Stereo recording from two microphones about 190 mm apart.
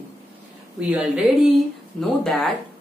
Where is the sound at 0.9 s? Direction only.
Centre (ahead or behind).